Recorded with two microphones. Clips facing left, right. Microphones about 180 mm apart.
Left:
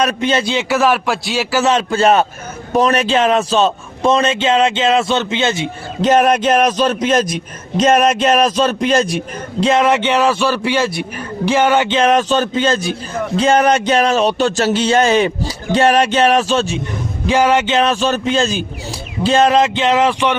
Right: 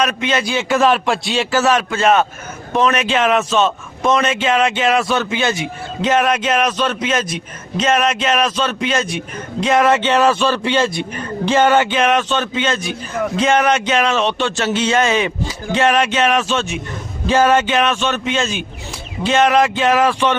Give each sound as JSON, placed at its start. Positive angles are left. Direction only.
{"t": 0.0, "sound": "a man's voice", "side_deg": 35}
{"t": 0.7, "sound": "a man's voice", "side_deg": 5}
{"t": 1.6, "sound": "a man's voice", "side_deg": 30}
{"t": 6.0, "sound": "a man's voice", "side_deg": 40}
{"t": 11.9, "sound": "a man's voice", "side_deg": 35}
{"t": 17.2, "sound": "a man's voice", "side_deg": 15}
{"t": 17.7, "sound": "a man's voice", "side_deg": 35}